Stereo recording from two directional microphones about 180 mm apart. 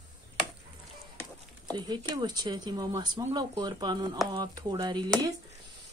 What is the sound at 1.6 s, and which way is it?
Speech, 25° right (ahead or behind).